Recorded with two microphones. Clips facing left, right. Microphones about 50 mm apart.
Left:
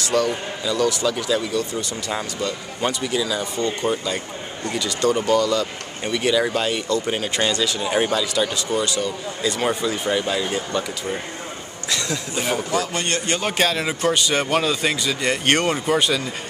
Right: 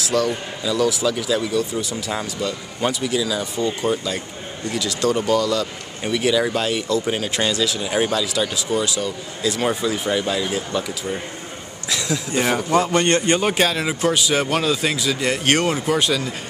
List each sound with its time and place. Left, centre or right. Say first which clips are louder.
0.0 s a man's voice: even; centre
12.7 s a man's voice: right 6 dB; right
13.4 s a man's voice: right 2 dB; centre